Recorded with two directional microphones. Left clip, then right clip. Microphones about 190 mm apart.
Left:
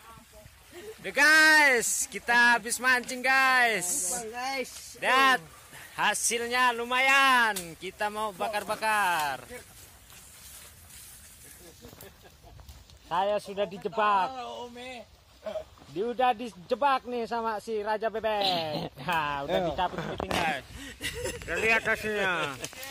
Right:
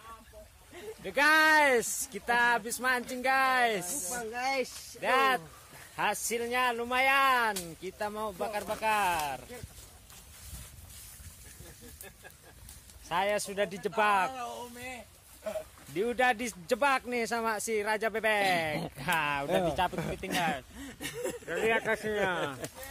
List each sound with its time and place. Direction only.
1.0 s speech: centre (ahead or behind)
4.4 s speech: 15° right (ahead or behind)
5.0 s speech: centre (ahead or behind)
13.1 s speech: 15° right (ahead or behind)
14.3 s speech: 5° left (ahead or behind)
15.9 s speech: 20° right (ahead or behind)
19.4 s speech: 30° right (ahead or behind)
21.0 s speech: 25° right (ahead or behind)
21.5 s speech: centre (ahead or behind)